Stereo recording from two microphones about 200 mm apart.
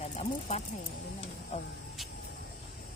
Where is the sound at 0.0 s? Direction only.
35° left (ahead or behind).